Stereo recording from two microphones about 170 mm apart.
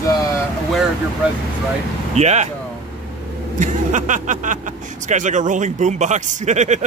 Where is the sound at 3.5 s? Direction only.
50° right (ahead or behind).